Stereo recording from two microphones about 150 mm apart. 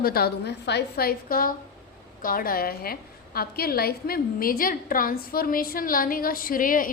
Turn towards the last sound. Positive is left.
turn(degrees=65)  # may be behind; listen again after turning